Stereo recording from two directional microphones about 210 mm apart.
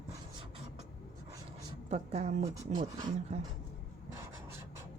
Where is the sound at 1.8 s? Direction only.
30° right (ahead or behind).